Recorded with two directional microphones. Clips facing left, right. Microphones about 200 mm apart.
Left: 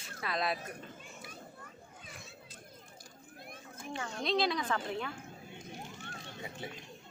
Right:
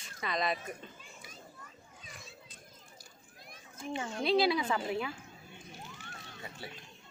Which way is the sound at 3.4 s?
55° left (ahead or behind).